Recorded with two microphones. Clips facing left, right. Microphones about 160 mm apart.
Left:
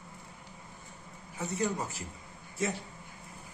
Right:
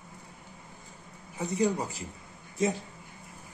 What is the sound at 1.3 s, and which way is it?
Speech, 15° right (ahead or behind).